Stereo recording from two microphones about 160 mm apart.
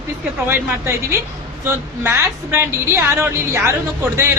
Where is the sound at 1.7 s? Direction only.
15° right (ahead or behind).